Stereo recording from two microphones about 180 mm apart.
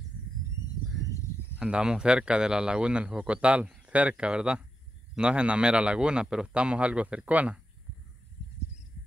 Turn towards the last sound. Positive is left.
turn(degrees=-10)  # may be behind; listen again after turning